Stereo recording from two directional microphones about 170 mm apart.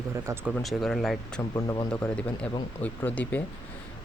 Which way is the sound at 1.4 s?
20° left (ahead or behind).